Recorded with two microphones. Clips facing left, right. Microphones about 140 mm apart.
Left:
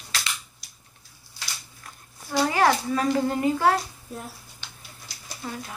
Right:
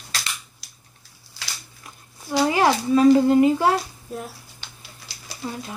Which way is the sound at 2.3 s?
15° right (ahead or behind).